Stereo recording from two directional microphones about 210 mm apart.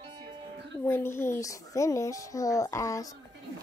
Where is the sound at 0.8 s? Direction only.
10° left (ahead or behind).